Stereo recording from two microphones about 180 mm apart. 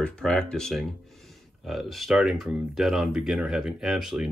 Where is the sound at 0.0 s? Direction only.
5° left (ahead or behind).